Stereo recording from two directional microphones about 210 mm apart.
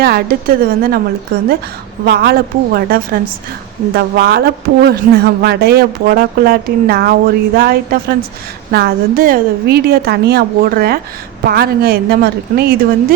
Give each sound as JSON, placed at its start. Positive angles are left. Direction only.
{"t": 0.0, "sound": "speech", "side_deg": -45}
{"t": 2.0, "sound": "speech", "side_deg": -50}